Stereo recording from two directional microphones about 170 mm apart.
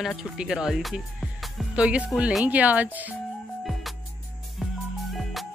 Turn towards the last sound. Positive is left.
turn(degrees=0)  # may be behind; listen again after turning